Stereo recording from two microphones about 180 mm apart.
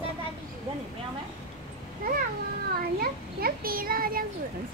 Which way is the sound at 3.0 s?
55° right (ahead or behind).